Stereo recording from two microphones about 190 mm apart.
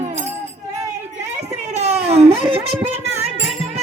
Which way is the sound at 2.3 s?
30° right (ahead or behind).